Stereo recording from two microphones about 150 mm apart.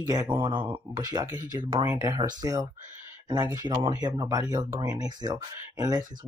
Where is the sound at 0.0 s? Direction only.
25° right (ahead or behind).